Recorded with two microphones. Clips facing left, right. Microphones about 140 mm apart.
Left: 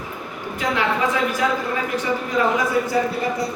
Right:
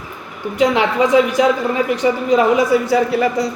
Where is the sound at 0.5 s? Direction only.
75° right (ahead or behind).